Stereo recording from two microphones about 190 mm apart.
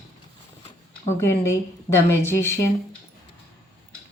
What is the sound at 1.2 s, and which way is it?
Speech, 15° left (ahead or behind).